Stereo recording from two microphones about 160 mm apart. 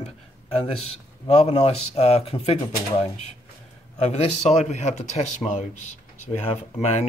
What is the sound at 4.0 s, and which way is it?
Speech, 40° left (ahead or behind).